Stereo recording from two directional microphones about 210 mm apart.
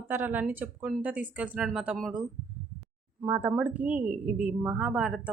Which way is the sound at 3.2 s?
10° right (ahead or behind).